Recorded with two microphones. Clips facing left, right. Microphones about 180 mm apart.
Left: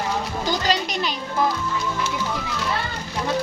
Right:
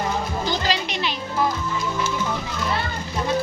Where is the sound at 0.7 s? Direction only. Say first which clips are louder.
Left 2 dB; 40° left (ahead or behind).